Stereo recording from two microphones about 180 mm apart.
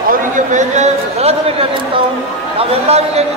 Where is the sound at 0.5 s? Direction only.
40° right (ahead or behind).